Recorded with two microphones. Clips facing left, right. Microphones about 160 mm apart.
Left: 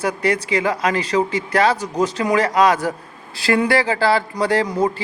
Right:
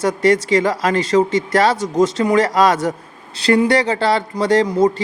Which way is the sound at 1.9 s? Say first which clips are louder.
Right 4 dB; 25° right (ahead or behind).